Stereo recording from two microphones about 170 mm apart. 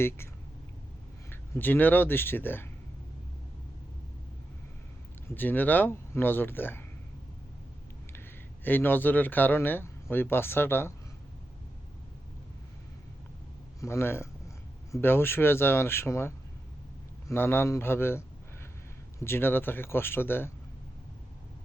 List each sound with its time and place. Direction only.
1.3 s speech: 10° left (ahead or behind)
5.3 s speech: 10° left (ahead or behind)
8.6 s speech: 10° left (ahead or behind)
13.8 s speech: 15° left (ahead or behind)
19.2 s speech: 15° left (ahead or behind)